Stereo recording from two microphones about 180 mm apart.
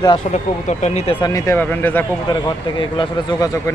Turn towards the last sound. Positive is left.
turn(degrees=20)  # may be behind; listen again after turning